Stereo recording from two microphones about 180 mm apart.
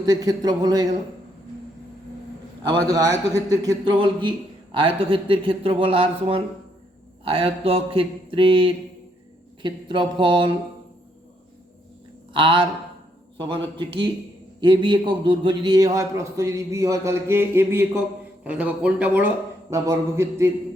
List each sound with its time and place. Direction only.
0.0 s a man's voice: 20° right (ahead or behind)
2.6 s a man's voice: 20° right (ahead or behind)
12.3 s a man's voice: 30° right (ahead or behind)
14.6 s a man's voice: 25° right (ahead or behind)